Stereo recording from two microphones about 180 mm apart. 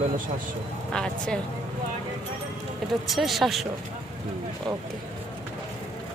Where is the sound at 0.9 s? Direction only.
5° left (ahead or behind).